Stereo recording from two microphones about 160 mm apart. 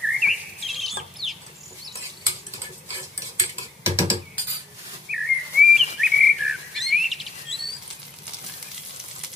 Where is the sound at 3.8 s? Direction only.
15° right (ahead or behind).